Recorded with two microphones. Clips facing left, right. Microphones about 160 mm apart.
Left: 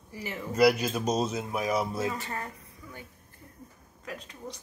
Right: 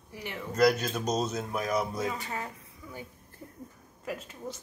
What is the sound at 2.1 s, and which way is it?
Speech, 5° right (ahead or behind).